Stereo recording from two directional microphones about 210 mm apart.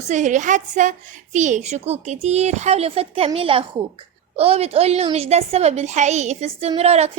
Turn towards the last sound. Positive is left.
turn(degrees=-30)  # may be behind; listen again after turning